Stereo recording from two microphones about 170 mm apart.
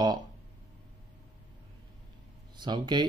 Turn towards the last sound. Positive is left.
turn(degrees=-25)  # may be behind; listen again after turning